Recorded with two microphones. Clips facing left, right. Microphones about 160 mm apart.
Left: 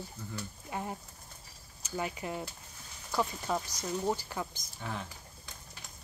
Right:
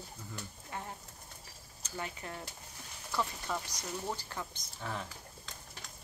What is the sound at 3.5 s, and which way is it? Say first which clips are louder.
Speech: left 5 dB; 25° left (ahead or behind).